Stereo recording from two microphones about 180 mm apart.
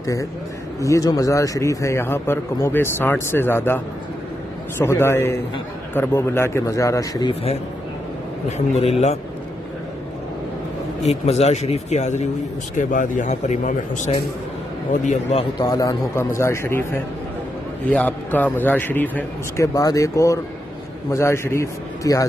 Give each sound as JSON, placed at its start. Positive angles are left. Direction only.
{"t": 0.0, "sound": "a man's voice", "side_deg": 20}
{"t": 8.5, "sound": "speech", "side_deg": 35}
{"t": 11.1, "sound": "speech", "side_deg": 35}
{"t": 15.6, "sound": "a man's voice", "side_deg": 20}
{"t": 17.8, "sound": "a man's voice", "side_deg": 10}